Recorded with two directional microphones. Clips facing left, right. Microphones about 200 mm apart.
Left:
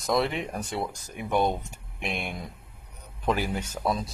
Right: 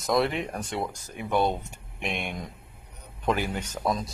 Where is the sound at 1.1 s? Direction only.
15° left (ahead or behind).